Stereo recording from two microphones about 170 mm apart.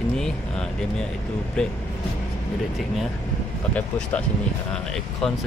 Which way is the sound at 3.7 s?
10° left (ahead or behind).